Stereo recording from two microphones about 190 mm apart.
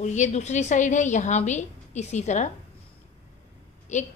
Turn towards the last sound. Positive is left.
turn(degrees=40)  # may be behind; listen again after turning